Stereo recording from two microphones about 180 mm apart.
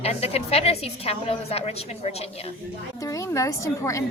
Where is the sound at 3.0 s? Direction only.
15° left (ahead or behind).